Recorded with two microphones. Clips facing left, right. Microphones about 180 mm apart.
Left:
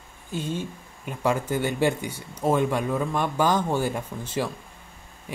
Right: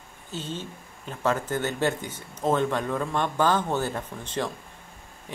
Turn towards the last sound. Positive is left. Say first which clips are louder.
# left 2 dB
turn(degrees=10)  # may be behind; listen again after turning